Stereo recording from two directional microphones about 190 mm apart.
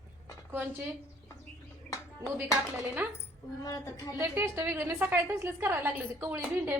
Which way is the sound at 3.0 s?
10° right (ahead or behind).